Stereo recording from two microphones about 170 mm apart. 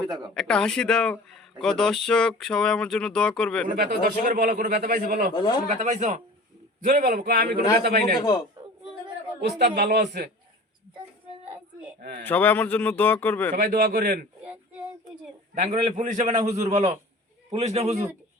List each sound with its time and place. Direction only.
0.3 s speech: 5° left (ahead or behind)
3.7 s a man's voice: 60° right (ahead or behind)
5.3 s a man's voice: 25° left (ahead or behind)
5.6 s a man's voice: 45° right (ahead or behind)
6.8 s a man's voice: 60° right (ahead or behind)
8.2 s a man's voice: 25° left (ahead or behind)
9.4 s speech: 70° right (ahead or behind)
11.9 s speech: 60° right (ahead or behind)
12.2 s a man's voice: 10° left (ahead or behind)
13.6 s a man's voice: 60° right (ahead or behind)
15.6 s a man's voice: 50° right (ahead or behind)